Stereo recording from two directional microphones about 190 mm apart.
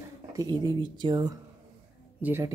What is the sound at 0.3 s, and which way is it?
Speech, 20° right (ahead or behind).